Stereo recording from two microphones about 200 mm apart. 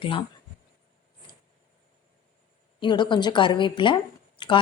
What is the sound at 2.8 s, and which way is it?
A woman's voice, 25° left (ahead or behind).